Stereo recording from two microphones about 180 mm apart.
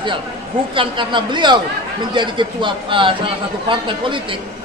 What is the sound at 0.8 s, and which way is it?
A man's voice, 25° right (ahead or behind).